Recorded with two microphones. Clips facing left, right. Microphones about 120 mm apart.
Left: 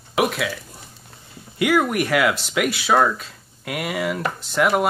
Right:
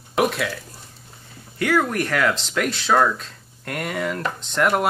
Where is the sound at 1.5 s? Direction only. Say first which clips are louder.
Left 2 dB; 10° left (ahead or behind).